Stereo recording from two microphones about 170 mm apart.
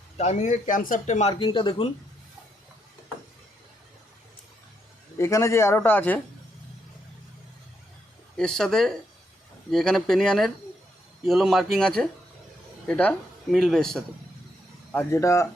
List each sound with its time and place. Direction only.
0.2 s speech: 45° left (ahead or behind)
1.3 s speech: 30° left (ahead or behind)
5.1 s a man's voice: 15° left (ahead or behind)
8.4 s speech: 5° left (ahead or behind)
14.9 s a man's voice: 15° left (ahead or behind)